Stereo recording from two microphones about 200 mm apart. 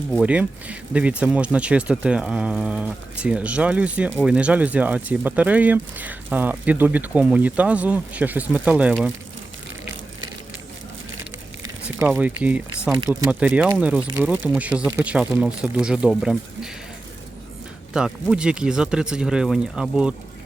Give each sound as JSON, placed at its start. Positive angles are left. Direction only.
{"t": 0.1, "sound": "speech", "side_deg": -5}
{"t": 11.9, "sound": "speech", "side_deg": -10}
{"t": 14.8, "sound": "speech", "side_deg": -15}
{"t": 15.1, "sound": "speech", "side_deg": -5}
{"t": 17.9, "sound": "speech", "side_deg": -5}